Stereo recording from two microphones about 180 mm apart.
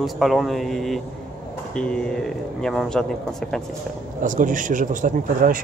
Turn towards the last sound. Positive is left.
turn(degrees=-50)  # may be behind; listen again after turning